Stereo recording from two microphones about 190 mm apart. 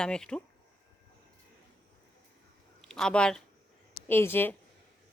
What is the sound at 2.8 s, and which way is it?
Speech, centre (ahead or behind).